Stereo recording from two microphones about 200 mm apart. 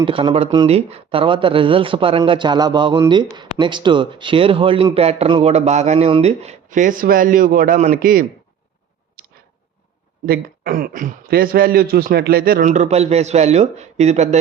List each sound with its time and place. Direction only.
0.0 s speech: 25° right (ahead or behind); by 8.3 s 45° right (ahead or behind)
10.2 s a man's voice: 45° right (ahead or behind)